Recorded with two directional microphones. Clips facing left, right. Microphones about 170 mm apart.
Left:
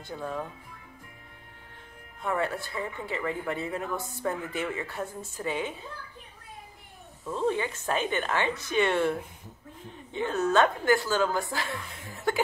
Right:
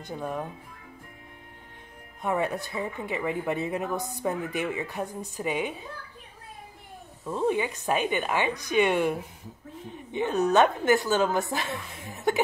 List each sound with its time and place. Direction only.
0.0 s speech: 20° right (ahead or behind)
2.2 s speech: 20° right (ahead or behind)
7.2 s a woman's voice: 15° right (ahead or behind)